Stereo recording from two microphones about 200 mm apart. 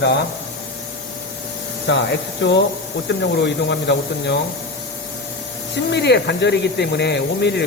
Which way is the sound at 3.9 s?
65° left (ahead or behind).